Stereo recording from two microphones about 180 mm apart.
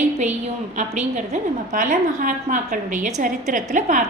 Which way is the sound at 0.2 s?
40° right (ahead or behind).